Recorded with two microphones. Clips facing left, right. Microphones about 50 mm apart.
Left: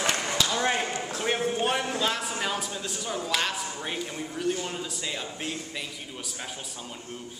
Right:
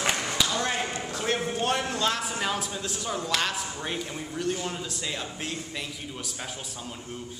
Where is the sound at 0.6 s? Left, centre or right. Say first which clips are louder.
Left 2 dB; centre.